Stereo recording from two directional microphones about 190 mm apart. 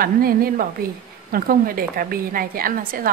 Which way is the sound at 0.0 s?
50° right (ahead or behind).